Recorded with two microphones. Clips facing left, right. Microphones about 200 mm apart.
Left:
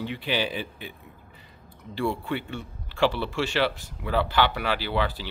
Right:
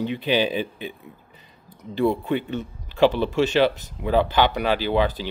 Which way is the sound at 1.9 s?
20° right (ahead or behind).